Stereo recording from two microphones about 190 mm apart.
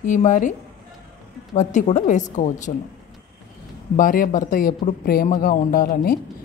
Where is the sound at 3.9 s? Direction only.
45° left (ahead or behind).